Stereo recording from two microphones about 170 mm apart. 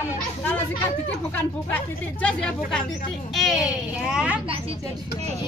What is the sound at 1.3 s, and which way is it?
A child's voice, 10° left (ahead or behind).